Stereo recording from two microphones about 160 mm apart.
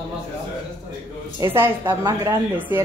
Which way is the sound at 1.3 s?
15° right (ahead or behind).